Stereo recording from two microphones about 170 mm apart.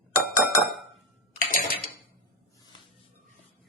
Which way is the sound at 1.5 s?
60° left (ahead or behind).